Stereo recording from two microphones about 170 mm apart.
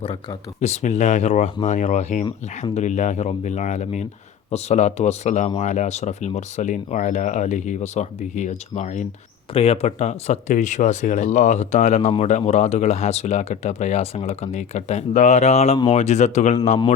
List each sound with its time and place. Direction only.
0.0 s speech: 35° left (ahead or behind)
9.5 s speech: 35° left (ahead or behind)